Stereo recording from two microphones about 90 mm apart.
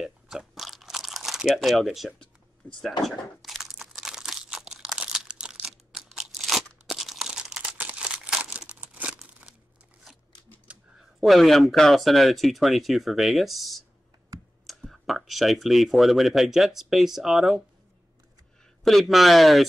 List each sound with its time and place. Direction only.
0.0 s crunch: 5° right (ahead or behind)
1.9 s speech: 5° right (ahead or behind)
2.6 s speech: 15° left (ahead or behind)
3.0 s crumpling: centre (ahead or behind)
10.7 s speech: 5° right (ahead or behind)
18.9 s speech: centre (ahead or behind)